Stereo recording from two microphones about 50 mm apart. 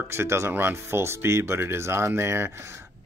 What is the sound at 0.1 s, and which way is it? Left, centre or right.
Speech, right.